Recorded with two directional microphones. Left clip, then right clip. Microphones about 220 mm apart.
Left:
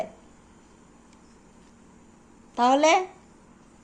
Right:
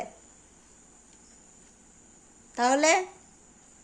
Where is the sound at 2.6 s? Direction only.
25° right (ahead or behind).